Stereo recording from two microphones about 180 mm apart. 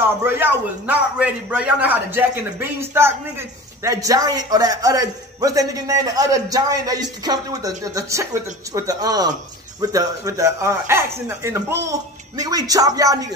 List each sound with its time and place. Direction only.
0.3 s a man's voice: 10° right (ahead or behind)